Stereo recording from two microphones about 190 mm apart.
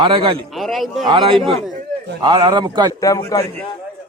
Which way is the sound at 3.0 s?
20° left (ahead or behind).